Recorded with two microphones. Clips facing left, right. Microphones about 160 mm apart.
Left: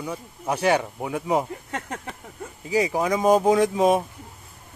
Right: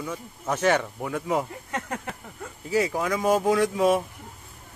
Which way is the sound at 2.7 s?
15° left (ahead or behind).